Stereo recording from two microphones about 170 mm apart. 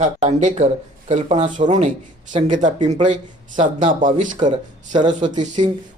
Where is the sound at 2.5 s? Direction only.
45° right (ahead or behind).